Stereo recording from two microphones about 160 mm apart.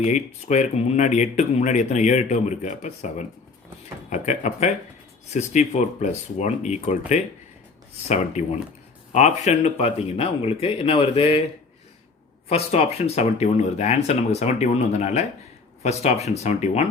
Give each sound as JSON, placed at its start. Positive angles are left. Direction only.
{"t": 0.0, "sound": "speech", "side_deg": 45}
{"t": 12.5, "sound": "speech", "side_deg": 40}